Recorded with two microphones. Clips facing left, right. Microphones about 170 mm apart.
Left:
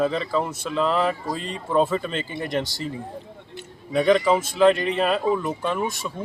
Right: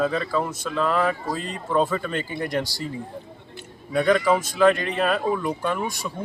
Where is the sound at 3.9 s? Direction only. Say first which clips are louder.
Left 1 dB; 20° left (ahead or behind).